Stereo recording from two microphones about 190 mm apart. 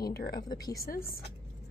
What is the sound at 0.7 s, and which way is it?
Speech, 50° left (ahead or behind).